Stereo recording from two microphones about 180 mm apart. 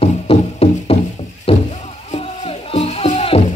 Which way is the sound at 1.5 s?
30° left (ahead or behind).